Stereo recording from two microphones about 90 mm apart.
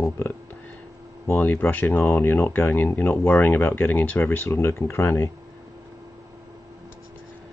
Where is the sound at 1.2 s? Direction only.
20° left (ahead or behind).